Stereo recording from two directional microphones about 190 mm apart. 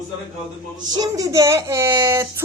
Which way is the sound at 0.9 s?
20° right (ahead or behind).